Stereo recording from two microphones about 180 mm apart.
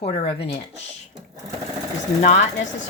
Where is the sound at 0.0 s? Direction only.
35° left (ahead or behind).